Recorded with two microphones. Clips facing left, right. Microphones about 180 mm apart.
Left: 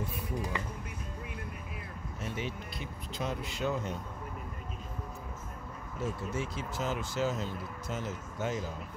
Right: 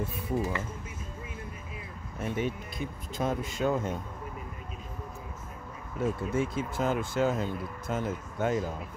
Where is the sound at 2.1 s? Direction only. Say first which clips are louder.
Right 7 dB; 50° right (ahead or behind).